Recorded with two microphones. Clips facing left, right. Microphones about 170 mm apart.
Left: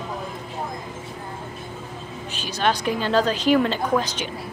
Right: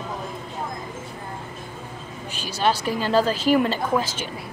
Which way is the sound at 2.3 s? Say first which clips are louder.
Even; 10° right (ahead or behind).